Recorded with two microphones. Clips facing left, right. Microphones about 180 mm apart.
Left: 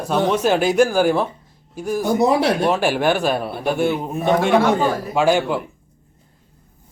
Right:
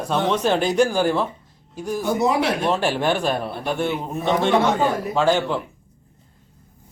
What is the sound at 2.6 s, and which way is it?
A man's voice, 10° left (ahead or behind).